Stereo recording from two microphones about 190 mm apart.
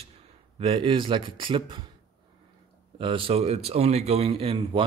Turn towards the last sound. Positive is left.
turn(degrees=-30)  # may be behind; listen again after turning